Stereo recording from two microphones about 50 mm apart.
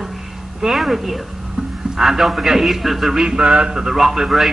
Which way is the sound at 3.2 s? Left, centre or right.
Centre.